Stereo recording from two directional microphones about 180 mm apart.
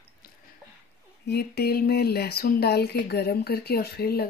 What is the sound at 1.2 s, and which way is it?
Speech, 65° left (ahead or behind).